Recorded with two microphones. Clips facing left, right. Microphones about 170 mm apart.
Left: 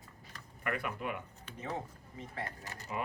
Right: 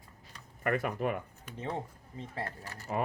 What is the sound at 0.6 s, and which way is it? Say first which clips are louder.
Speech: right 6 dB; 45° right (ahead or behind).